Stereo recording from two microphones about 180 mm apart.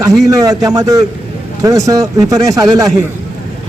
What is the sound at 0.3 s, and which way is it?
A man's voice, 20° right (ahead or behind).